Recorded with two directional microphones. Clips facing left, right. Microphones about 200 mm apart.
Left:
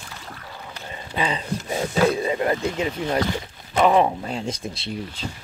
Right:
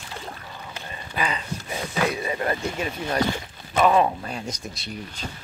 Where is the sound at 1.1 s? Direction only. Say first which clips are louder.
Left 3 dB; 30° left (ahead or behind).